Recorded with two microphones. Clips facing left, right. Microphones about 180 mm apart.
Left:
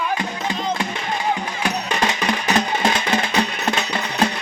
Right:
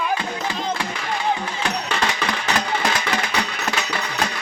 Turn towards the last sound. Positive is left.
turn(degrees=25)  # may be behind; listen again after turning